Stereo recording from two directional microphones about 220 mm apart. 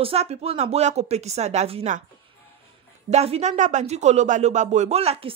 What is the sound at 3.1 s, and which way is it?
Speech, 30° right (ahead or behind).